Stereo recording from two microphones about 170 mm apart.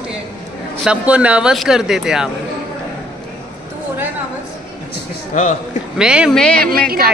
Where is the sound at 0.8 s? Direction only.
5° right (ahead or behind).